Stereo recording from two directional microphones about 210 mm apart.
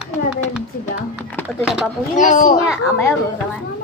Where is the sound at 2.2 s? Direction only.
40° left (ahead or behind).